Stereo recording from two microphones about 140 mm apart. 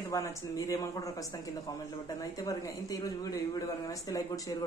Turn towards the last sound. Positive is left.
turn(degrees=25)  # may be behind; listen again after turning